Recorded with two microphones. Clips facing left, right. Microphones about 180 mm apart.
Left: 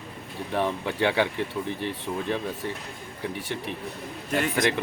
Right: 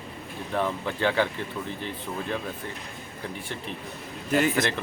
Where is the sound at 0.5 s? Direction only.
15° left (ahead or behind).